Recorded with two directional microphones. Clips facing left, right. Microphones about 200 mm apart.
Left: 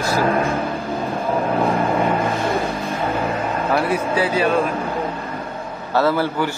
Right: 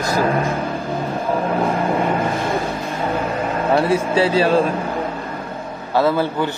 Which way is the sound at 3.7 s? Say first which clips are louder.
Right 4 dB; 25° right (ahead or behind).